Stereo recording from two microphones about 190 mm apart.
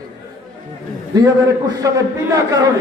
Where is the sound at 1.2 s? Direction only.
20° right (ahead or behind).